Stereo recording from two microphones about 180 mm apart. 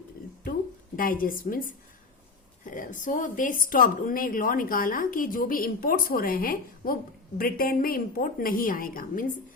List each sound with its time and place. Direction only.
0.9 s a woman's voice: 50° left (ahead or behind)